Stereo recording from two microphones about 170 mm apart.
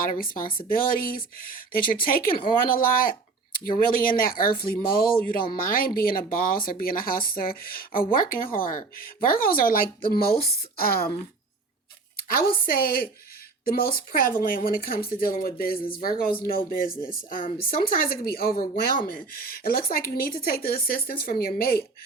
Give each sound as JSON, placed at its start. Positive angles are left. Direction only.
{"t": 0.0, "sound": "speech", "side_deg": 55}
{"t": 4.2, "sound": "speech", "side_deg": 60}
{"t": 12.3, "sound": "speech", "side_deg": 60}